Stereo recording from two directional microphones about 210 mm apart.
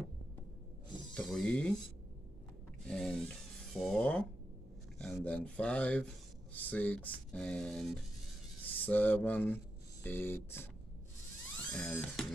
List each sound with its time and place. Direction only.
1.1 s sheep: 5° left (ahead or behind)
2.9 s a sound: centre (ahead or behind)
6.5 s speech: 5° left (ahead or behind)
11.7 s speech: 5° left (ahead or behind)